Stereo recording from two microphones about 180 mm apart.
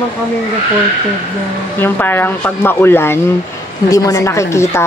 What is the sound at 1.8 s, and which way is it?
Speech, 10° left (ahead or behind).